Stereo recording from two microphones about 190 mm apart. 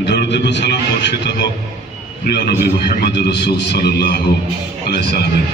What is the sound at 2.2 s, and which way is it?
A man's voice, 55° left (ahead or behind).